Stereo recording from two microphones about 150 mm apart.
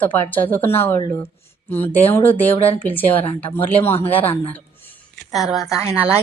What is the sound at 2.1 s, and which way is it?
Speech, 10° left (ahead or behind).